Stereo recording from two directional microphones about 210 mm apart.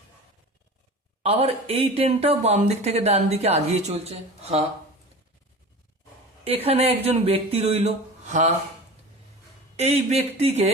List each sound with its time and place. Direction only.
1.2 s speech: 30° right (ahead or behind)
6.4 s speech: 30° right (ahead or behind)
9.7 s speech: 30° right (ahead or behind)